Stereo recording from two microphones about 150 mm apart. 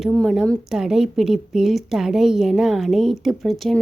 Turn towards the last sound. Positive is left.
turn(degrees=0)  # may be behind; listen again after turning